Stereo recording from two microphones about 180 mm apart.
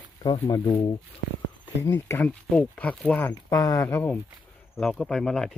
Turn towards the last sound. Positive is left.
turn(degrees=0)  # may be behind; listen again after turning